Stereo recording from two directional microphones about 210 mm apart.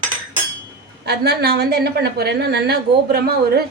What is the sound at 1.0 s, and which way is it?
Speech, 50° right (ahead or behind).